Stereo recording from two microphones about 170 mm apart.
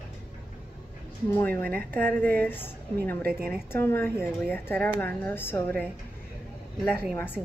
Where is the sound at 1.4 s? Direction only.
10° left (ahead or behind).